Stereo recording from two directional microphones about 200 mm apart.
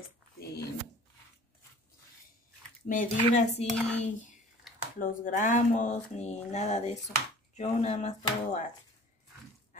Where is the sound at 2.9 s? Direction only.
40° left (ahead or behind).